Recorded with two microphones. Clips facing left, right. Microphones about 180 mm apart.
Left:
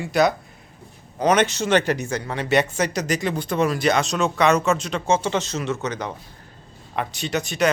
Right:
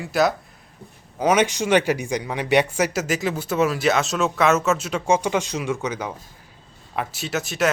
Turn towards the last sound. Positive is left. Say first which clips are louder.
# left 1 dB
turn(degrees=0)  # may be behind; listen again after turning